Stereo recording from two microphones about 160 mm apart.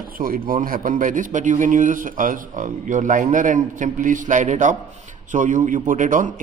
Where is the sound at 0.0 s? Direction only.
65° right (ahead or behind).